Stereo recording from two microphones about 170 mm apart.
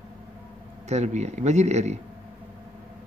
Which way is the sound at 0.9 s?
40° right (ahead or behind).